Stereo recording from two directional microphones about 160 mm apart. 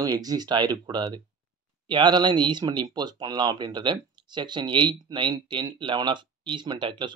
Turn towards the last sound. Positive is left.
turn(degrees=-30)  # may be behind; listen again after turning